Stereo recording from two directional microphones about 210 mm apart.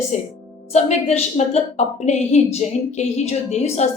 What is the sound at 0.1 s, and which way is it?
A woman's voice, 35° left (ahead or behind).